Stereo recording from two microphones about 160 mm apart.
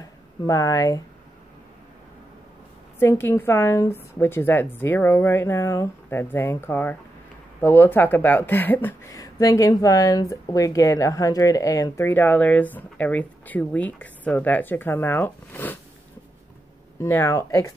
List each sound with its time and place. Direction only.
0.5 s speech: 20° left (ahead or behind)
3.0 s speech: 15° left (ahead or behind)
17.0 s speech: 15° left (ahead or behind)